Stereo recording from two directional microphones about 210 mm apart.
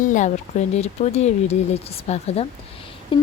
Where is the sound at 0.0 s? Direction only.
35° left (ahead or behind).